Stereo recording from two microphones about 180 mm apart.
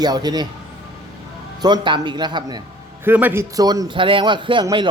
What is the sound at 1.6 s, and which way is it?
A man's voice, 25° right (ahead or behind).